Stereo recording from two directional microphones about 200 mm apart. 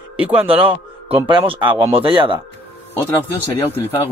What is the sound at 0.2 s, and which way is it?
Speech, 5° right (ahead or behind).